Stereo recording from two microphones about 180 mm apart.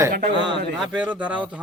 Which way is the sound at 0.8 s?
5° right (ahead or behind).